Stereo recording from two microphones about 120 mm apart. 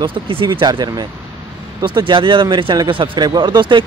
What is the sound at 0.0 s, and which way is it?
Speech, 45° right (ahead or behind).